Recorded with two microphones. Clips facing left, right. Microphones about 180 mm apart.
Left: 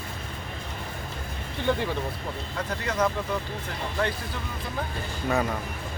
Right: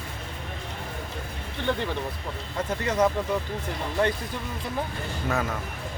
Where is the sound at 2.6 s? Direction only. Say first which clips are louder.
Right 3 dB; 20° right (ahead or behind).